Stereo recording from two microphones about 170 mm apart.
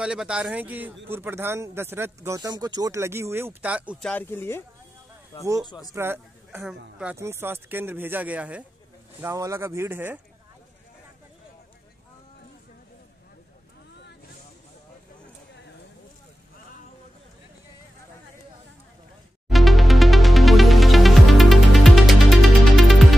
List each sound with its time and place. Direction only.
0.0 s speech: 5° right (ahead or behind)
4.0 s speech: 10° left (ahead or behind)
5.7 s speech: 20° left (ahead or behind)
5.9 s speech: 15° right (ahead or behind)
7.2 s speech: 15° right (ahead or behind)
19.5 s music: centre (ahead or behind)